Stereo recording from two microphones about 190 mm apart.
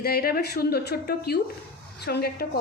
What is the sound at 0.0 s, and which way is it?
A woman's voice, 55° left (ahead or behind).